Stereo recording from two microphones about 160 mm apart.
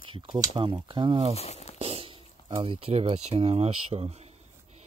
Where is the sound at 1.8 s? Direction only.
40° right (ahead or behind).